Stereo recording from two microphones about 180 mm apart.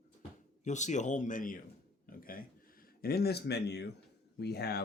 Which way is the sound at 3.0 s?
60° left (ahead or behind).